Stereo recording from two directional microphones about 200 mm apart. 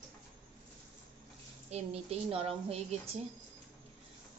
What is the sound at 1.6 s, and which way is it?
Speech, 30° right (ahead or behind).